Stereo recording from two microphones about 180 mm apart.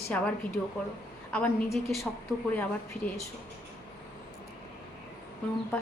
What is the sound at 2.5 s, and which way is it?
Speech, 10° left (ahead or behind).